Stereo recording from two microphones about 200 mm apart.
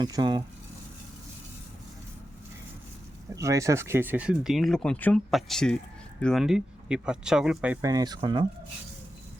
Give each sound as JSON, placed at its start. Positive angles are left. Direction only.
{"t": 0.0, "sound": "speech", "side_deg": -20}
{"t": 3.3, "sound": "speech", "side_deg": -15}